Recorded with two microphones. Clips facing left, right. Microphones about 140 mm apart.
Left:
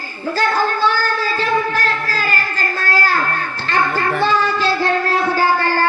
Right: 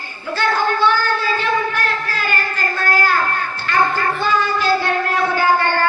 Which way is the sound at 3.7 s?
30° left (ahead or behind).